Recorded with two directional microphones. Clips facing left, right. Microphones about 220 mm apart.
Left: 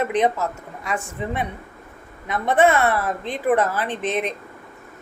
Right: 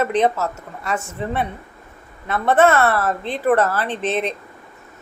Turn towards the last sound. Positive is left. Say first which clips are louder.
# right 2 dB
turn(degrees=10)  # may be behind; listen again after turning